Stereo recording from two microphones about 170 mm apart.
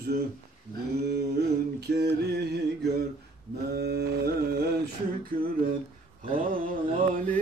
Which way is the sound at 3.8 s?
70° right (ahead or behind).